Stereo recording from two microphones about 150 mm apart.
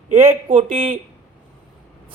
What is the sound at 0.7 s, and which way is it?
Speech, 40° right (ahead or behind).